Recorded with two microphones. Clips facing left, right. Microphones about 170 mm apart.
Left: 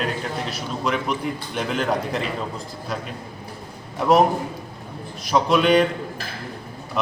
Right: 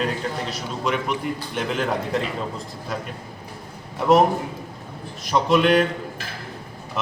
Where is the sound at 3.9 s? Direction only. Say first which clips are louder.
Even; centre (ahead or behind).